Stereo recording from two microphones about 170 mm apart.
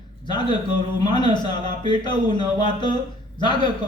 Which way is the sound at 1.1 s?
25° left (ahead or behind).